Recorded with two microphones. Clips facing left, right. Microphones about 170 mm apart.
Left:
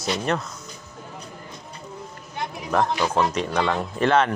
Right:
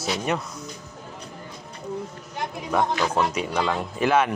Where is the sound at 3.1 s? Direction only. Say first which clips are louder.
Left 1 dB; 5° right (ahead or behind).